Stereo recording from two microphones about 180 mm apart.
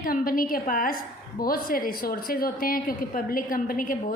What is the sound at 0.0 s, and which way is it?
A woman's voice, 50° left (ahead or behind).